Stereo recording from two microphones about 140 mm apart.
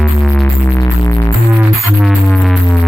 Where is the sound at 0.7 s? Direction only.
20° left (ahead or behind).